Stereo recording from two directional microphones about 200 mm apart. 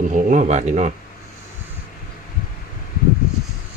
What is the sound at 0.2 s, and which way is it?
Speech, 40° right (ahead or behind).